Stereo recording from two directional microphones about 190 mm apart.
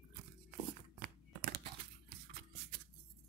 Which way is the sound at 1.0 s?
55° right (ahead or behind).